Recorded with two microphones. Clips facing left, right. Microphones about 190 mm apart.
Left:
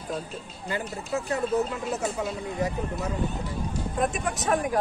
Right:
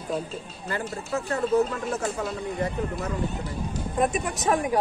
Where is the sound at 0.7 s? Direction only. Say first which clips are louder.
Even; 15° left (ahead or behind).